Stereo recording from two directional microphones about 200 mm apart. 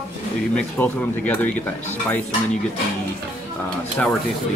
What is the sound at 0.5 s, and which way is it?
Speech, 5° left (ahead or behind).